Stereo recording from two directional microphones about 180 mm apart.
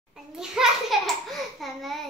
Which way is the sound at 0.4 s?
Centre (ahead or behind).